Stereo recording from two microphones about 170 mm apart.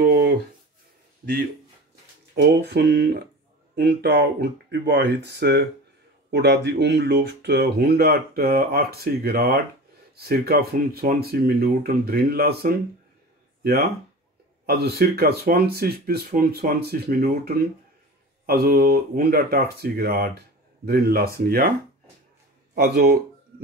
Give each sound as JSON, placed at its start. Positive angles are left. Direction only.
{"t": 0.0, "sound": "a sound", "side_deg": -65}
{"t": 2.4, "sound": "speech", "side_deg": -75}
{"t": 14.7, "sound": "speech", "side_deg": -70}
{"t": 22.8, "sound": "speech", "side_deg": -70}